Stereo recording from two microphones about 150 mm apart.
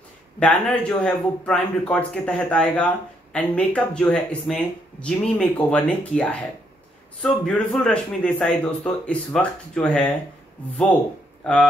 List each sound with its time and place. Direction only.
0.4 s a man's voice: 10° left (ahead or behind)
11.4 s a man's voice: 5° left (ahead or behind)